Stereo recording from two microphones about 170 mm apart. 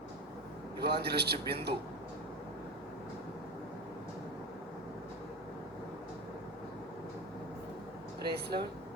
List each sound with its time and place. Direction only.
0.8 s a man's voice: 70° right (ahead or behind)
8.3 s a man's voice: 70° right (ahead or behind)